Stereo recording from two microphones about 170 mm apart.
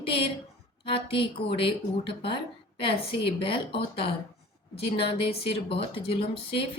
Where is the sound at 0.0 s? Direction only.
30° left (ahead or behind).